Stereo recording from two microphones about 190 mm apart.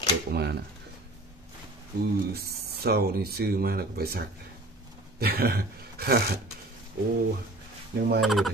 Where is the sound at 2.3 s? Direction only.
55° right (ahead or behind).